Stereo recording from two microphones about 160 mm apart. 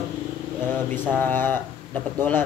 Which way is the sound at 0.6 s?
15° left (ahead or behind).